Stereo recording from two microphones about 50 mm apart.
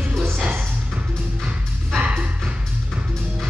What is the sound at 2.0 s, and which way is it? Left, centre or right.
Music, right.